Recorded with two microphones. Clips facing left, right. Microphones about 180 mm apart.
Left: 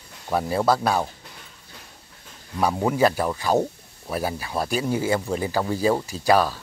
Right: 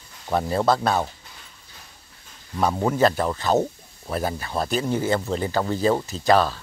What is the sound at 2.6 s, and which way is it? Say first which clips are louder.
Speech: even; 5° left (ahead or behind).